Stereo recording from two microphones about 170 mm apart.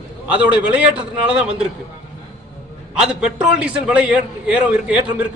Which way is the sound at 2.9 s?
5° right (ahead or behind).